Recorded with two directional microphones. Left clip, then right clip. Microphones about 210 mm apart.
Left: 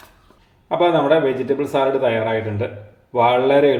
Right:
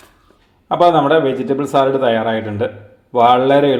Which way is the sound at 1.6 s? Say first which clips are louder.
Right 5 dB; 30° right (ahead or behind).